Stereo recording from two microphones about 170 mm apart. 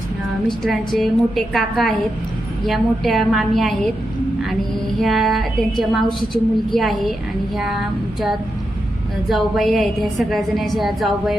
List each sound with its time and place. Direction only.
0.6 s a woman's voice: centre (ahead or behind)
4.9 s a woman's voice: centre (ahead or behind)
9.3 s a woman's voice: centre (ahead or behind)